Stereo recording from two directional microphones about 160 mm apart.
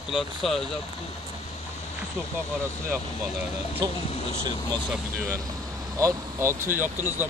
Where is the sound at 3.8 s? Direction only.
30° right (ahead or behind).